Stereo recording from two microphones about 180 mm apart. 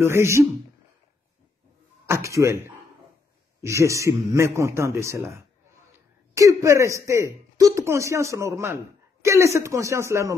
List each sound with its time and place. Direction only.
0.0 s speech: 15° right (ahead or behind)
2.0 s speech: 15° right (ahead or behind)